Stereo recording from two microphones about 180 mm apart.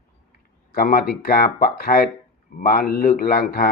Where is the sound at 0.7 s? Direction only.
55° left (ahead or behind).